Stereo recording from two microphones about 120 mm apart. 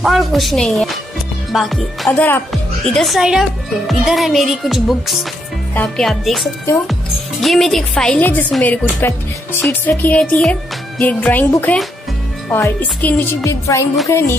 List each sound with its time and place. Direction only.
0.0 s speech: centre (ahead or behind)
2.1 s music: 15° left (ahead or behind)
2.5 s speech: centre (ahead or behind); by 9.6 s 20° left (ahead or behind)
9.7 s music: 15° left (ahead or behind)
13.4 s speech: 25° left (ahead or behind)